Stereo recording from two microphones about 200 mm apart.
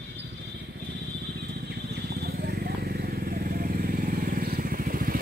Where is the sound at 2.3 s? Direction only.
50° right (ahead or behind).